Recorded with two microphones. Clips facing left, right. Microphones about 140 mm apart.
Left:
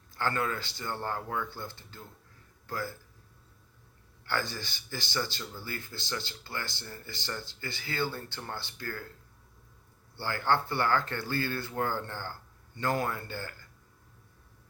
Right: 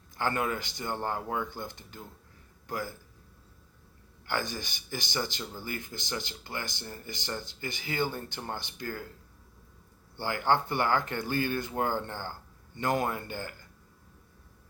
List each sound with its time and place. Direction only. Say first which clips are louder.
0.2 s speech: right 1 dB; 15° right (ahead or behind)
4.3 s speech: right 1 dB; 15° right (ahead or behind)
10.2 s speech: right 1 dB; 15° right (ahead or behind)